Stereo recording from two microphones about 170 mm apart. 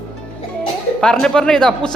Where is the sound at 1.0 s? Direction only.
5° left (ahead or behind).